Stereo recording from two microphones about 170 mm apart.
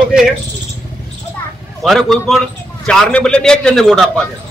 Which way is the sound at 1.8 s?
Centre (ahead or behind).